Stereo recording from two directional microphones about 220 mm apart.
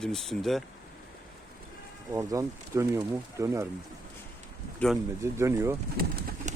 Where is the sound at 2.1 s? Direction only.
15° right (ahead or behind).